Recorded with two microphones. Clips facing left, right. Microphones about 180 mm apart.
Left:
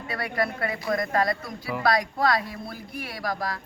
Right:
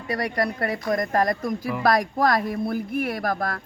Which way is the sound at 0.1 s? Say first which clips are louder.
Right 3 dB; 40° right (ahead or behind).